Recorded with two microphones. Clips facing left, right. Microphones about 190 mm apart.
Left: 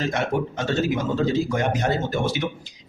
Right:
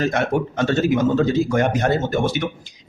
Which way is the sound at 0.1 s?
55° right (ahead or behind).